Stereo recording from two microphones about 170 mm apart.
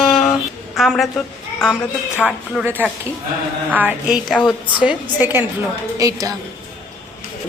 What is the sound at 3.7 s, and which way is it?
Speech, 10° right (ahead or behind).